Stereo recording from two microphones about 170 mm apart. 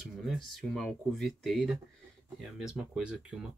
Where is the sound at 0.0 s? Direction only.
Centre (ahead or behind).